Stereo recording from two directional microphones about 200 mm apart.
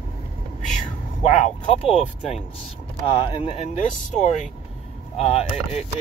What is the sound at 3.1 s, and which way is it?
Speech, 25° left (ahead or behind).